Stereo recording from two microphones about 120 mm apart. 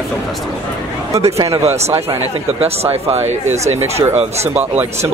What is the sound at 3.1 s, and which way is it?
Speech, 65° right (ahead or behind).